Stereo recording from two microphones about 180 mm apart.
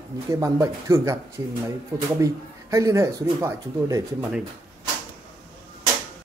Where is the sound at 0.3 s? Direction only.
15° right (ahead or behind).